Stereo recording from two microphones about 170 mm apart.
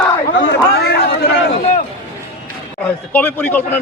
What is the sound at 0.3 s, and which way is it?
Chatter, 80° left.